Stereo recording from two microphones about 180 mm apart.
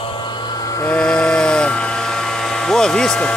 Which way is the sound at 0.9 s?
5° left (ahead or behind).